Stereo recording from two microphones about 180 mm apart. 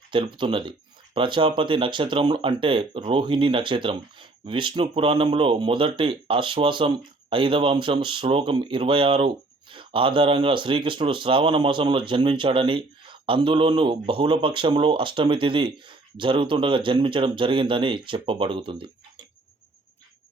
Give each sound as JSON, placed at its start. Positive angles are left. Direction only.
{"t": 0.1, "sound": "speech", "side_deg": -25}